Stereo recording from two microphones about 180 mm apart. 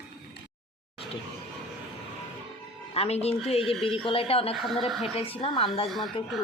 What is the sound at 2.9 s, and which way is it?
A woman's voice, 35° left (ahead or behind).